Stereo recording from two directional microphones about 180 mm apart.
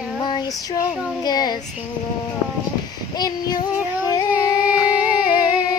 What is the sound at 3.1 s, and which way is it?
Female singing, 20° left (ahead or behind).